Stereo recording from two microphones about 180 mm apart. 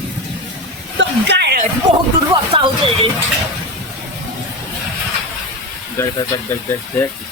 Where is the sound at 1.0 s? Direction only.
70° right (ahead or behind).